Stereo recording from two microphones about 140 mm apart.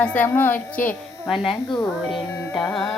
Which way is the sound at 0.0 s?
10° left (ahead or behind).